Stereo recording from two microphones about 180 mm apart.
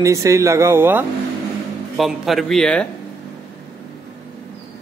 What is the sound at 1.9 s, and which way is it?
Speech, centre (ahead or behind).